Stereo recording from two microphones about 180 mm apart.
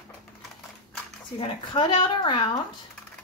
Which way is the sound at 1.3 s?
30° left (ahead or behind).